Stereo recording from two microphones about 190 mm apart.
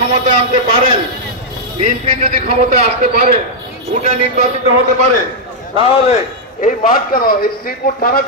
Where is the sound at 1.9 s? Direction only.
45° right (ahead or behind).